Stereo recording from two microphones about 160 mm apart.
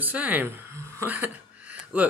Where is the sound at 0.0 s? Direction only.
10° right (ahead or behind).